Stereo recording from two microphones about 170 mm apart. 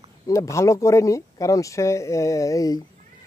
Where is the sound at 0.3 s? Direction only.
20° left (ahead or behind).